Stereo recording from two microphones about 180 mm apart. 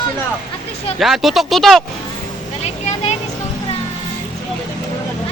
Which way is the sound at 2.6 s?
35° left (ahead or behind).